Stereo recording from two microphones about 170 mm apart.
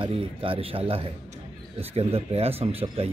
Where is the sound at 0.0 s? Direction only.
30° right (ahead or behind).